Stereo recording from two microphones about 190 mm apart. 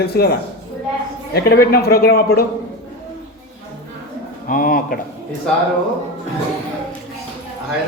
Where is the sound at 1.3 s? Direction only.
55° left (ahead or behind).